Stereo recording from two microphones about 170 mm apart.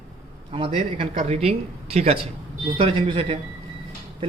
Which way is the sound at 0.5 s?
30° right (ahead or behind).